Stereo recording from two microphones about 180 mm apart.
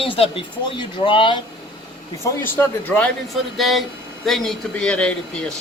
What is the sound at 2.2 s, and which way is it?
Speech, 10° left (ahead or behind).